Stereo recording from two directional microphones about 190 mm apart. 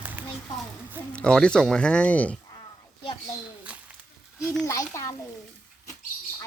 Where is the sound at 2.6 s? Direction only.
25° left (ahead or behind).